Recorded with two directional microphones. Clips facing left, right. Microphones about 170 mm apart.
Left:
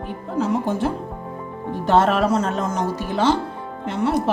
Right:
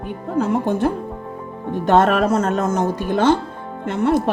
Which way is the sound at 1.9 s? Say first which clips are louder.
Right 2 dB; 60° right (ahead or behind).